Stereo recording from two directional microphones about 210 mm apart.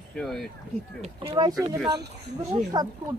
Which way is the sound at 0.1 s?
5° left (ahead or behind).